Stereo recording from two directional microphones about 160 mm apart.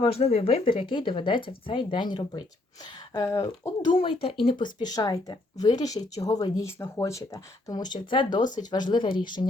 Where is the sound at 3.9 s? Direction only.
35° left (ahead or behind).